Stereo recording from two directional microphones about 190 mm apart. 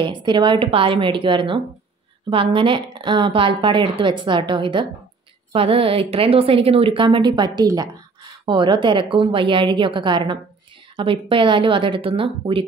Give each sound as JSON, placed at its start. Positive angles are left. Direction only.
{"t": 0.0, "sound": "a woman's voice", "side_deg": -25}